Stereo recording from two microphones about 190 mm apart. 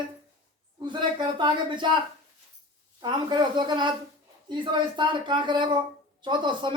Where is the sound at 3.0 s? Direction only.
25° right (ahead or behind).